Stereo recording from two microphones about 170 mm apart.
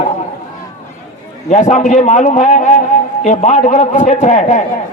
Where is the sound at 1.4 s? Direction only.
45° left (ahead or behind).